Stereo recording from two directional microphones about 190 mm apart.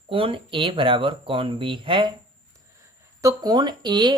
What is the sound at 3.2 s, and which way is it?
Speech, 20° right (ahead or behind).